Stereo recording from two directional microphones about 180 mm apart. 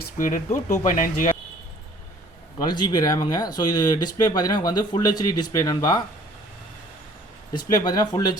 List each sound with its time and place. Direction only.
0.0 s speech: 45° left (ahead or behind)
2.6 s speech: 25° left (ahead or behind)
7.5 s speech: 20° left (ahead or behind)